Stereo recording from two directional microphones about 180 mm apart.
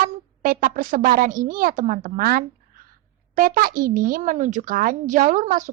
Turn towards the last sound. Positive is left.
turn(degrees=-45)  # may be behind; listen again after turning